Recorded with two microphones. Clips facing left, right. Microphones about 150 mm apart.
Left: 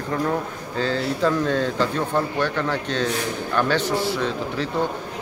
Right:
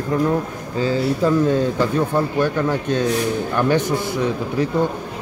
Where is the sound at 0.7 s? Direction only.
10° right (ahead or behind).